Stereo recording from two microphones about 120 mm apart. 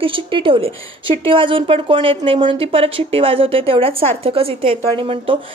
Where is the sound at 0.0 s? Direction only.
45° right (ahead or behind).